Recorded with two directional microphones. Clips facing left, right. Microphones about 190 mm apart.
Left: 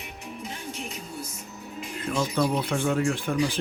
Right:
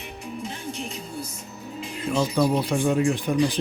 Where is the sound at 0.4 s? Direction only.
30° right (ahead or behind).